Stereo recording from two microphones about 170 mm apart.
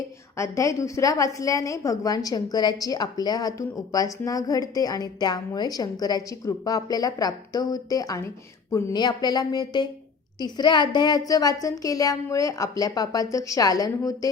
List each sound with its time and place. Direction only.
0.3 s a woman's voice: 15° left (ahead or behind)